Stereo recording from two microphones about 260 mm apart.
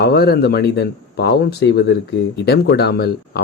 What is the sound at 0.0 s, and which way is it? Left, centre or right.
Speech, left.